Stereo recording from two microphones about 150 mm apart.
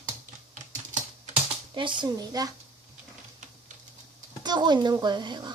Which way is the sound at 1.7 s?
30° right (ahead or behind).